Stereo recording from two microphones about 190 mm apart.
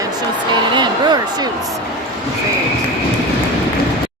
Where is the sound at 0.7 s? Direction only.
25° right (ahead or behind).